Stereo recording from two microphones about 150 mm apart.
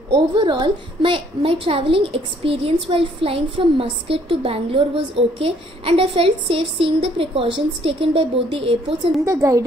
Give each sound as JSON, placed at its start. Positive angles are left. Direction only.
{"t": 0.1, "sound": "a woman's voice", "side_deg": -30}
{"t": 9.2, "sound": "a woman's voice", "side_deg": -20}